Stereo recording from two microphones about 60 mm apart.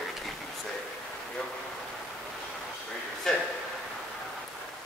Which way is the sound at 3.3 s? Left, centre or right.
Centre.